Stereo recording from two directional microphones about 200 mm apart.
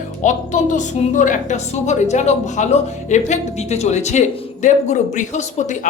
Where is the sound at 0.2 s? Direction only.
40° left (ahead or behind).